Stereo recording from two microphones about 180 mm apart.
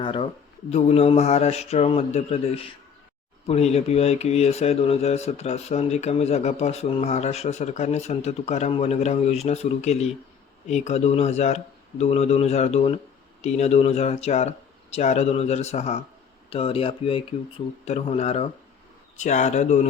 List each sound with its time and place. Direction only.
0.0 s speech: 30° left (ahead or behind)